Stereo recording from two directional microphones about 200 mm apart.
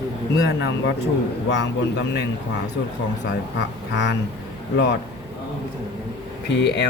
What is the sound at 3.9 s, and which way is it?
Speech, 60° left (ahead or behind).